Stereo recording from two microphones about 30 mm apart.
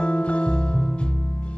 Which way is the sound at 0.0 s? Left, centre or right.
Left.